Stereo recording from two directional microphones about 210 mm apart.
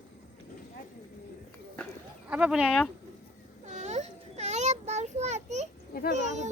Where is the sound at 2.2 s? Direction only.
5° right (ahead or behind).